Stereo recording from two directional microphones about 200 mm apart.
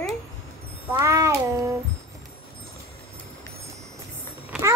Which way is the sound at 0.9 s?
15° right (ahead or behind).